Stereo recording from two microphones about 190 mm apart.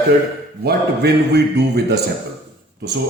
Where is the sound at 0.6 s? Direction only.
55° right (ahead or behind).